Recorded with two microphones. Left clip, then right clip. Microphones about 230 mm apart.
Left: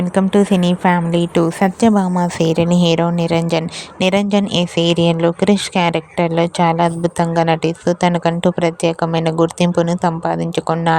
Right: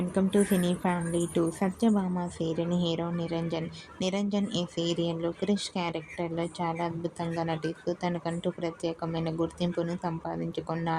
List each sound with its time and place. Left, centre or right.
0.1 s speech: left